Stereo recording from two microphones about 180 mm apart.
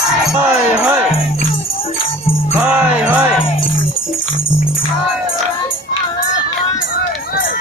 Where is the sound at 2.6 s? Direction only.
10° right (ahead or behind).